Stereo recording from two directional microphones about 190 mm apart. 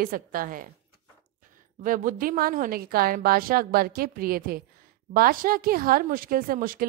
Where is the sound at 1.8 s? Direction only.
45° right (ahead or behind).